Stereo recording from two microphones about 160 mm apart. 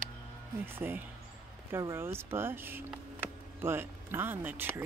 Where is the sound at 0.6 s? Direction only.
15° right (ahead or behind).